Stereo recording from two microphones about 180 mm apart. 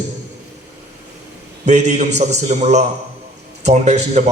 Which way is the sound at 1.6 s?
40° right (ahead or behind).